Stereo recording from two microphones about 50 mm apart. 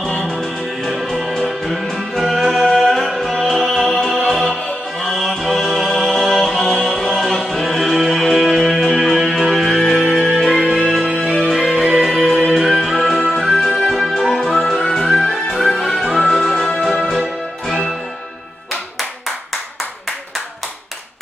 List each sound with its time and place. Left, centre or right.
1.3 s music: centre
10.8 s music: centre
13.1 s music: centre